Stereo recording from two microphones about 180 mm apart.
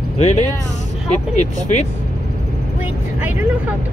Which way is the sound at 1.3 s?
40° left (ahead or behind).